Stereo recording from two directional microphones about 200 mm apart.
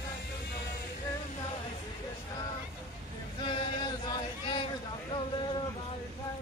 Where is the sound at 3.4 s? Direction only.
25° left (ahead or behind).